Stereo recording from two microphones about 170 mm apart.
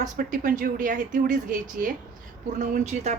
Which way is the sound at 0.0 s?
50° right (ahead or behind).